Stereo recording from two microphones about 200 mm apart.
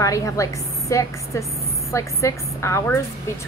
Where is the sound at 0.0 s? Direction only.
15° left (ahead or behind).